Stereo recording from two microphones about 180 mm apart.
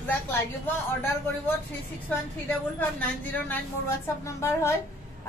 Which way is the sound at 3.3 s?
10° left (ahead or behind).